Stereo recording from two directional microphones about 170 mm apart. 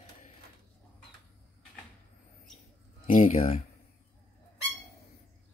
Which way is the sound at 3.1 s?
50° left (ahead or behind).